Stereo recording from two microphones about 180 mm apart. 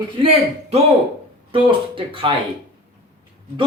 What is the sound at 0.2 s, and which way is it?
Speech, 30° right (ahead or behind).